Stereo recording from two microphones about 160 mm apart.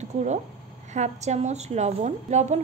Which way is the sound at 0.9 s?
45° right (ahead or behind).